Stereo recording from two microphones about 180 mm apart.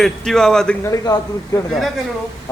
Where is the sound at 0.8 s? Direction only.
20° left (ahead or behind).